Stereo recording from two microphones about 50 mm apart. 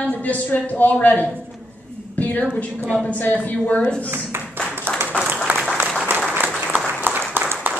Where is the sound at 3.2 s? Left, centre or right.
Left.